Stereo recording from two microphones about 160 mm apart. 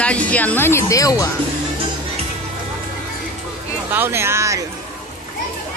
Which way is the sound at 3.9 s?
15° right (ahead or behind).